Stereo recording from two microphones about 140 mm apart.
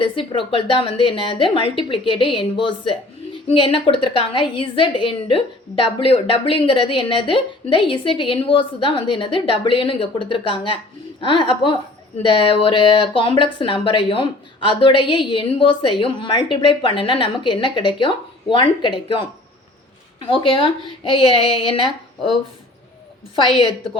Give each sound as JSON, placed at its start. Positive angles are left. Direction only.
{"t": 0.0, "sound": "a woman's voice", "side_deg": 40}